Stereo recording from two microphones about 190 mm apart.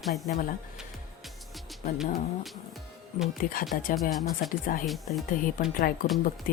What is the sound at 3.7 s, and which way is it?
Speech, 50° left (ahead or behind).